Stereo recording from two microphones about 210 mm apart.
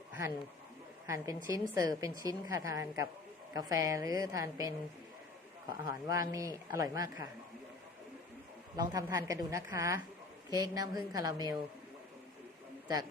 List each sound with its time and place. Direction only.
1.0 s speech: 15° right (ahead or behind)
8.7 s speech: 15° right (ahead or behind)